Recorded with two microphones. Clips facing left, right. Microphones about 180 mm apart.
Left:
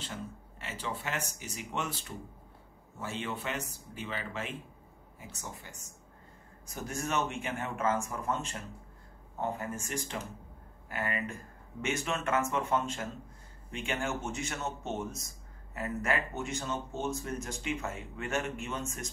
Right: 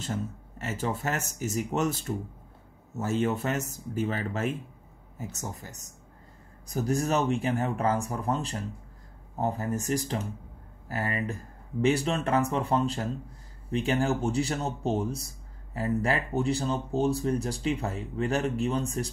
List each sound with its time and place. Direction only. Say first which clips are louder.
0.0 s speech: right 8 dB; 45° right (ahead or behind)